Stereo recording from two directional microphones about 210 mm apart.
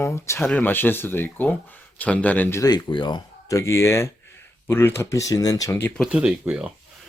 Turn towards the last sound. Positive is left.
turn(degrees=-5)  # may be behind; listen again after turning